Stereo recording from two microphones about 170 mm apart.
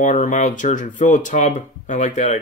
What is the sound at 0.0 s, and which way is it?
Speech, 45° left (ahead or behind).